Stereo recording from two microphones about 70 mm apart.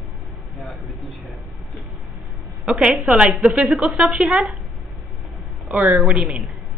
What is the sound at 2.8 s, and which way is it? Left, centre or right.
Speech, centre.